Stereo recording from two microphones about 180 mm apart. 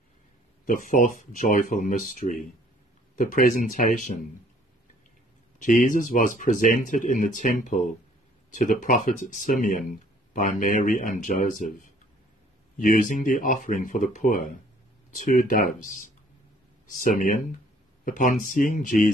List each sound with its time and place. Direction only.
0.7 s speech: 45° left (ahead or behind)
5.6 s speech: 45° left (ahead or behind)